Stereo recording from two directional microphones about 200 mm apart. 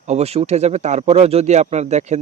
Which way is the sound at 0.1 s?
30° right (ahead or behind).